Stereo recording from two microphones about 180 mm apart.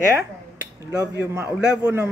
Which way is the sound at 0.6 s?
20° right (ahead or behind).